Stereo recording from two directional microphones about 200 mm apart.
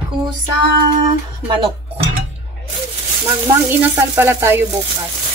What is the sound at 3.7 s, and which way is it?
Speech, 10° right (ahead or behind).